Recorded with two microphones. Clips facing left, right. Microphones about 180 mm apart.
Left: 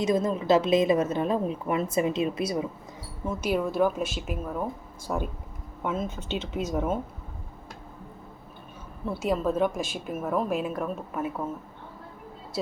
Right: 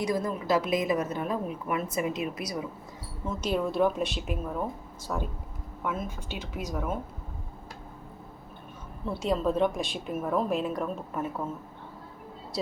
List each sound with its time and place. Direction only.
0.0 s a woman's voice: 20° left (ahead or behind)
3.2 s a woman's voice: 10° left (ahead or behind)
5.0 s a woman's voice: 15° left (ahead or behind)
9.0 s a woman's voice: 5° left (ahead or behind)